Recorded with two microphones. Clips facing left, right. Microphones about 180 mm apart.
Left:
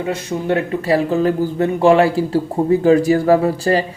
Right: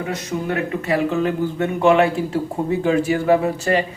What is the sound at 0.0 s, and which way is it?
A man's voice, 30° left (ahead or behind).